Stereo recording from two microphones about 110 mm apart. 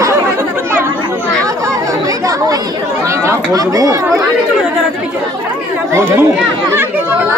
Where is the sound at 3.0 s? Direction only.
25° right (ahead or behind).